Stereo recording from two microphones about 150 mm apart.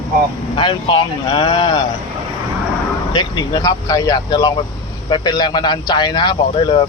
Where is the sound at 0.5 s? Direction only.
30° left (ahead or behind).